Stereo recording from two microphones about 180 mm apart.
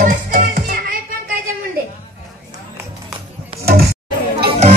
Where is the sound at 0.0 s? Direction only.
50° right (ahead or behind).